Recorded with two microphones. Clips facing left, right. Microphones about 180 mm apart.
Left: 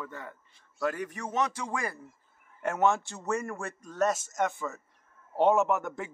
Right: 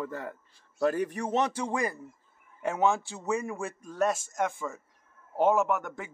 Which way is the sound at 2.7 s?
Centre (ahead or behind).